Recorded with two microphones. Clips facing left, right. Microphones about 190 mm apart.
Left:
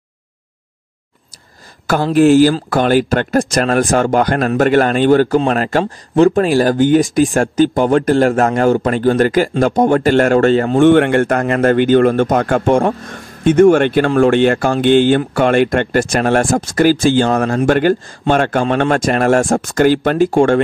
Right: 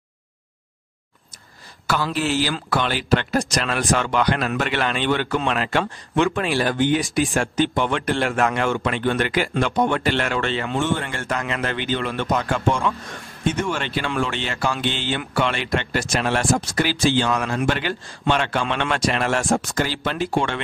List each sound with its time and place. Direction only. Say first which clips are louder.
2.1 s speech: left 14 dB; 50° left (ahead or behind)
10.9 s speech: left 15 dB; 60° left (ahead or behind); by 20.6 s 45° left (ahead or behind)